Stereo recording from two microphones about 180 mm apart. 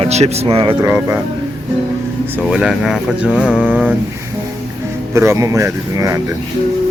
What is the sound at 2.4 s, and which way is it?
Speech, 5° right (ahead or behind).